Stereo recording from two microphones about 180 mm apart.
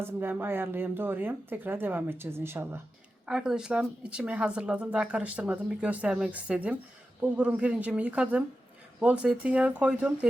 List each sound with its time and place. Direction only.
0.0 s speech: 10° right (ahead or behind)